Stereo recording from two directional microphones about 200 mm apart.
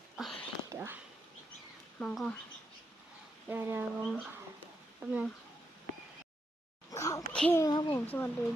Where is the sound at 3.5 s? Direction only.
10° right (ahead or behind).